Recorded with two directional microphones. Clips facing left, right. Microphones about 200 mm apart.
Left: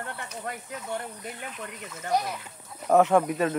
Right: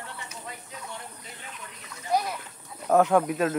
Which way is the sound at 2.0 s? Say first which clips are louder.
Even; 60° left (ahead or behind).